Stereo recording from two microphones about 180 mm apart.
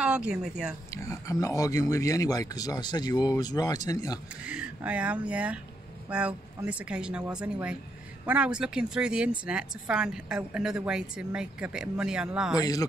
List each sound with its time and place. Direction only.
0.0 s speech: 5° right (ahead or behind)
0.9 s speech: 15° left (ahead or behind)
4.5 s speech: 5° right (ahead or behind)
12.5 s speech: 20° left (ahead or behind)